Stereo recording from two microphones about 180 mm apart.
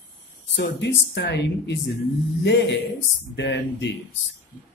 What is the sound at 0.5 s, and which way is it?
Speech, 75° left (ahead or behind).